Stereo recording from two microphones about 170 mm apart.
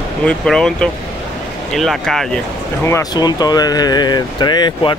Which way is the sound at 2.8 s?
20° left (ahead or behind).